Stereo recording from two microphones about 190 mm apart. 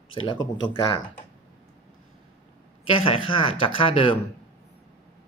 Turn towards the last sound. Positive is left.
turn(degrees=30)  # may be behind; listen again after turning